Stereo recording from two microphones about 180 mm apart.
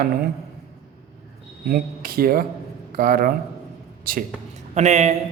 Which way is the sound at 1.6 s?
55° right (ahead or behind).